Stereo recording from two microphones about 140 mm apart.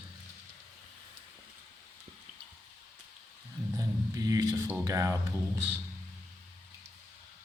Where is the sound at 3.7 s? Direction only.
25° right (ahead or behind).